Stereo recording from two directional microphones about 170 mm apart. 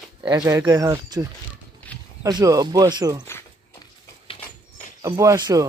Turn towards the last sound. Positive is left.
turn(degrees=-20)  # may be behind; listen again after turning